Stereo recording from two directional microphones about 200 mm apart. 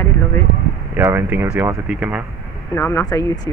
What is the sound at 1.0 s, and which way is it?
Speech, 10° right (ahead or behind).